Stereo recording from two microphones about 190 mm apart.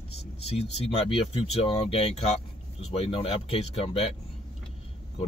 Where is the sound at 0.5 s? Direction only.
30° left (ahead or behind).